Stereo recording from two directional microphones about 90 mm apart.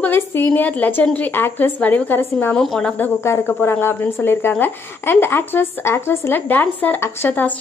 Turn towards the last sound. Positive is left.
turn(degrees=20)  # may be behind; listen again after turning